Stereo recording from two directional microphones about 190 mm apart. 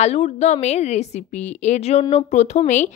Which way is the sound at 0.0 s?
35° left (ahead or behind).